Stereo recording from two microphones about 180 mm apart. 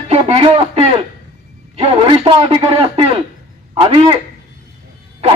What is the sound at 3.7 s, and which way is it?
Speech, 35° right (ahead or behind).